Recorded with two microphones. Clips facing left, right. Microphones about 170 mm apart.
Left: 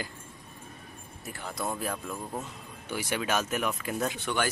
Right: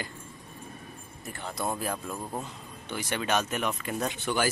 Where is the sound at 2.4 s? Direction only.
10° left (ahead or behind).